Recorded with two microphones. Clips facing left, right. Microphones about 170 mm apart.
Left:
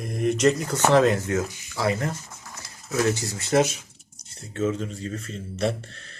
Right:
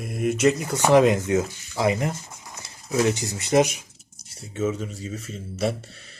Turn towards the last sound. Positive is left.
turn(degrees=-5)  # may be behind; listen again after turning